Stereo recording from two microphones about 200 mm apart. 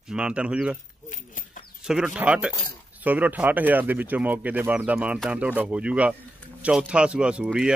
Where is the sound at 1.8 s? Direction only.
5° right (ahead or behind).